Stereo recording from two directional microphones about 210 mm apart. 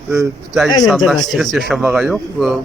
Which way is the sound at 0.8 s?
Centre (ahead or behind).